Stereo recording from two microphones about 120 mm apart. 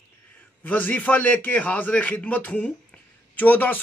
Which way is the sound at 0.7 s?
15° left (ahead or behind).